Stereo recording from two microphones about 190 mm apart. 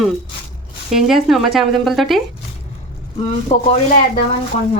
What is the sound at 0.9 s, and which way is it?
Speech, centre (ahead or behind).